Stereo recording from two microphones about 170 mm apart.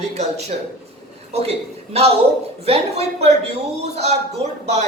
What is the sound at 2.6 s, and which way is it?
Speech, 35° right (ahead or behind).